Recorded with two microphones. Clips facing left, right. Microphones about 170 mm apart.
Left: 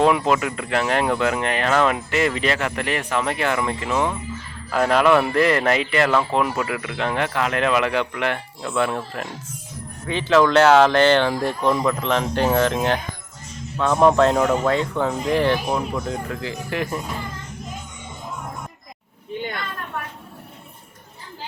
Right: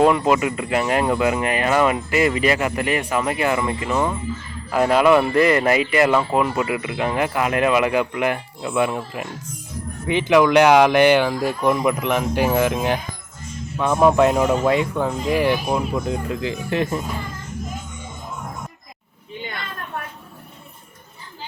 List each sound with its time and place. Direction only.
0.0 s speech: 5° right (ahead or behind); by 17.0 s 20° right (ahead or behind)